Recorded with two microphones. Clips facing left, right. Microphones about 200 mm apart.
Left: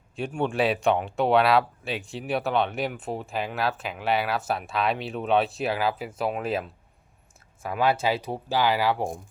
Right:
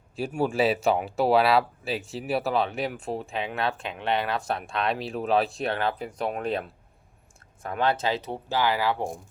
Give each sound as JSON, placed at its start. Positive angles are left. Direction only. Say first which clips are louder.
{"t": 0.2, "sound": "speech", "louder": "right 1 dB", "side_deg": 0}